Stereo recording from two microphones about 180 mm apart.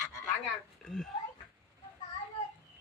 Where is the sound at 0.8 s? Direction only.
Centre (ahead or behind).